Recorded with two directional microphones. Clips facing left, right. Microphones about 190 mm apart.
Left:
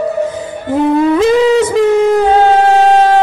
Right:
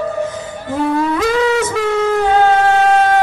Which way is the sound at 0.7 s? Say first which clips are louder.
Left 6 dB; 20° left (ahead or behind).